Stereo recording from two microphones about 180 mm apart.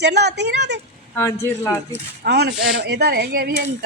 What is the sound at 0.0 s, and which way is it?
Speech, 65° right (ahead or behind).